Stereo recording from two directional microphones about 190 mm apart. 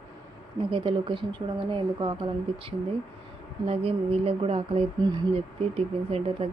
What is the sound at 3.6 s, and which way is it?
Speech, 30° right (ahead or behind).